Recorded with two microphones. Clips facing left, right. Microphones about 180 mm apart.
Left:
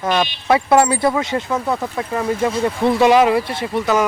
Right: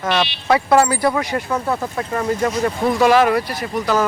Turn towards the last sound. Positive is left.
turn(degrees=25)  # may be behind; listen again after turning